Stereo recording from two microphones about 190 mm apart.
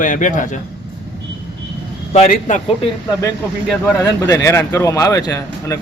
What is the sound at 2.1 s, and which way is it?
Speech, 40° left (ahead or behind).